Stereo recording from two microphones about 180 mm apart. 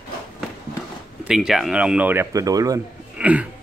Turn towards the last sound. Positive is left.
turn(degrees=-5)  # may be behind; listen again after turning